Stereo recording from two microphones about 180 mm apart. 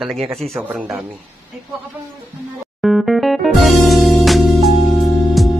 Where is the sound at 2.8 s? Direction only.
Centre (ahead or behind).